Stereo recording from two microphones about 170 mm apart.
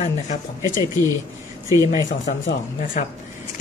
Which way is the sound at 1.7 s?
20° right (ahead or behind).